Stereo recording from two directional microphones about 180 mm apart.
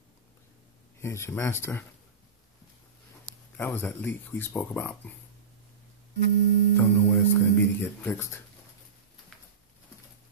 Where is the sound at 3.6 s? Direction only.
10° left (ahead or behind).